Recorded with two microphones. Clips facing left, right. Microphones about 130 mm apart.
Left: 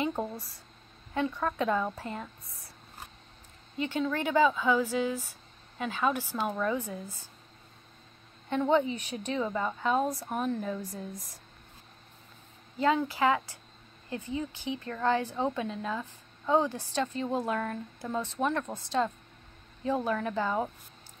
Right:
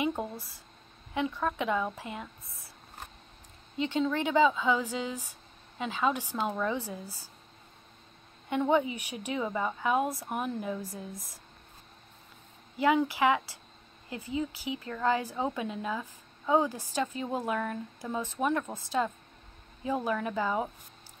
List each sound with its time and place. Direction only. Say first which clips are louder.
0.1 s speech: left 1 dB; centre (ahead or behind)
3.7 s a woman's voice: right 1 dB; 20° right (ahead or behind)
6.8 s speech: left 1 dB; 30° right (ahead or behind)
8.5 s a woman's voice: left 1 dB; 15° right (ahead or behind)
12.7 s a woman's voice: right 1 dB; 15° right (ahead or behind)